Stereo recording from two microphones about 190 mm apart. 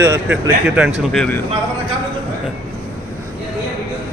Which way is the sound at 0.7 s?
5° right (ahead or behind).